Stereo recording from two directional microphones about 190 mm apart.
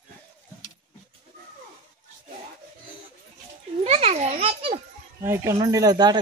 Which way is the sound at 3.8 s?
35° right (ahead or behind).